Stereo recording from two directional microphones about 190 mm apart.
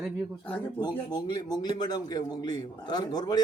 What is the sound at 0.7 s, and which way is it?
A man's voice, 20° left (ahead or behind).